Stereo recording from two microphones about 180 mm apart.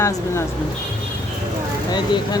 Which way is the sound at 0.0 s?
15° left (ahead or behind).